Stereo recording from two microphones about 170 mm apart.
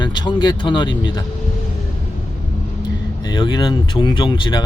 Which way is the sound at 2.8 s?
25° left (ahead or behind).